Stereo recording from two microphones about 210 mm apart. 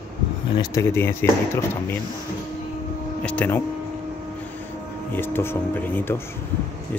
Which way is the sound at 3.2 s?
5° left (ahead or behind).